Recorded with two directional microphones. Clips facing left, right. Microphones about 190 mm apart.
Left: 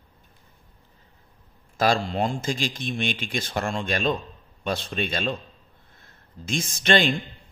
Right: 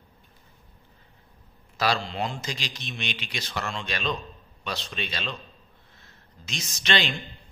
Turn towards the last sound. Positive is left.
turn(degrees=50)  # may be behind; listen again after turning